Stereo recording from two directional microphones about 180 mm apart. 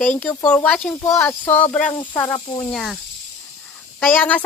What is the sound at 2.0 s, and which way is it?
Speech, 25° left (ahead or behind).